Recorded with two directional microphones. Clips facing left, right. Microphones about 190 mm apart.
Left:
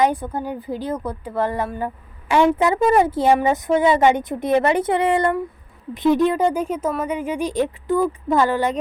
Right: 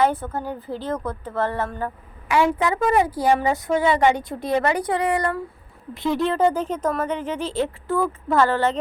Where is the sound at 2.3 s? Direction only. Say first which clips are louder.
Left 4 dB; 30° left (ahead or behind).